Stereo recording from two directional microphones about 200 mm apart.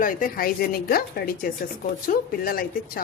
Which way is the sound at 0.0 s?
45° left (ahead or behind).